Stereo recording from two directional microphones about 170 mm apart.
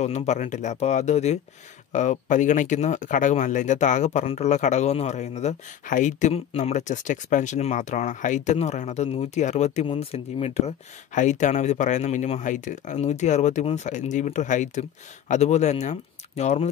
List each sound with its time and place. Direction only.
0.0 s speech: 40° left (ahead or behind)